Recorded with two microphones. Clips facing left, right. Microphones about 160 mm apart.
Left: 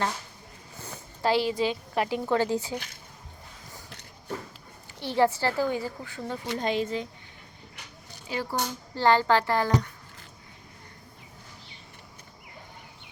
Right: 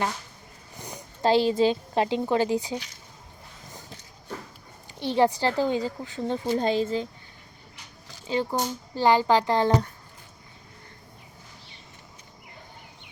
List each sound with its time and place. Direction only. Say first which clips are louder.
0.8 s a sound: right 3 dB; 15° right (ahead or behind)
1.3 s speech: right 5 dB; 25° right (ahead or behind)
2.2 s speech: right 2 dB; 15° right (ahead or behind)
4.9 s speech: right 2 dB; 15° right (ahead or behind); by 7.1 s 35° right (ahead or behind)
8.3 s speech: right 4 dB; 20° right (ahead or behind)